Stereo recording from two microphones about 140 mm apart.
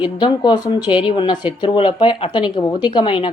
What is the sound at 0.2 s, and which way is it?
Speech, 30° left (ahead or behind).